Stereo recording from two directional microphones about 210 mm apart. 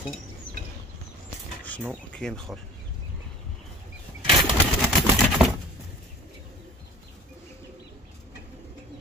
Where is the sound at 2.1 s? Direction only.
5° left (ahead or behind).